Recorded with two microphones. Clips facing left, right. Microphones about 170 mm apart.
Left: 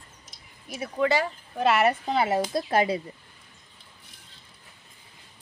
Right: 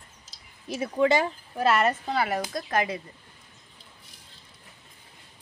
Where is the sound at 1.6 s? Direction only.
Centre (ahead or behind).